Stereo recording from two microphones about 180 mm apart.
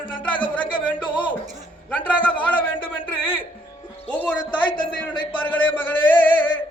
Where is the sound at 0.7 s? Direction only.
25° left (ahead or behind).